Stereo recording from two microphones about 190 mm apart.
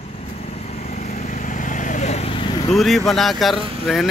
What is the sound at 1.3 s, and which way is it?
Vehicle, 40° left (ahead or behind).